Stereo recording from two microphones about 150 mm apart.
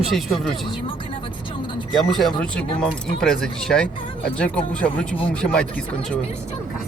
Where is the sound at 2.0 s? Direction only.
Centre (ahead or behind).